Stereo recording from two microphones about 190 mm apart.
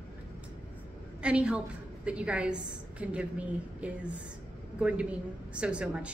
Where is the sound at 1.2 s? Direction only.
5° right (ahead or behind).